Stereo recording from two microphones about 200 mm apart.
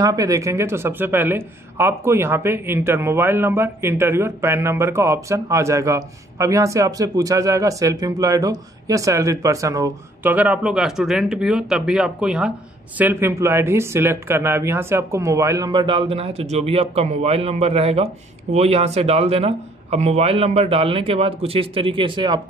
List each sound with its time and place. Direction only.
0.0 s speech: 15° right (ahead or behind)